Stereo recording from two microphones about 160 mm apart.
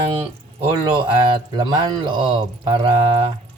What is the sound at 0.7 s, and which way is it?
Speech, 30° right (ahead or behind).